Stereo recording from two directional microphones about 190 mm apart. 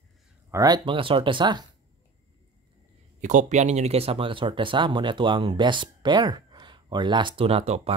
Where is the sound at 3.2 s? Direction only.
40° right (ahead or behind).